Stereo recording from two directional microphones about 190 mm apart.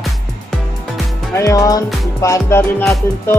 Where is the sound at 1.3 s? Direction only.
20° left (ahead or behind).